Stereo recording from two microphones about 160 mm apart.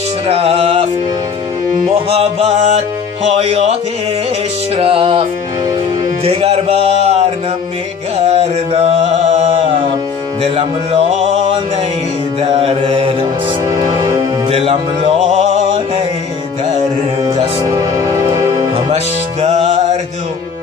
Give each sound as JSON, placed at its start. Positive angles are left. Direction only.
{"t": 0.3, "sound": "music", "side_deg": -35}
{"t": 2.0, "sound": "music", "side_deg": -40}
{"t": 3.3, "sound": "speech", "side_deg": -40}
{"t": 4.7, "sound": "music", "side_deg": -35}
{"t": 6.2, "sound": "music", "side_deg": -40}
{"t": 8.3, "sound": "music", "side_deg": -40}
{"t": 12.4, "sound": "mantra", "side_deg": -35}
{"t": 13.9, "sound": "music", "side_deg": -20}
{"t": 14.5, "sound": "music", "side_deg": -40}
{"t": 17.7, "sound": "music", "side_deg": -20}
{"t": 19.4, "sound": "music", "side_deg": -40}